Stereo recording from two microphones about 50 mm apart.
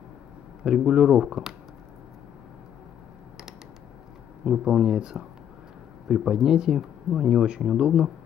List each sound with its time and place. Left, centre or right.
0.7 s speech: centre
4.5 s speech: centre